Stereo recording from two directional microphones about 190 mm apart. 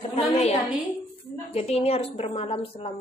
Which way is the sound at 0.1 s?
30° left (ahead or behind).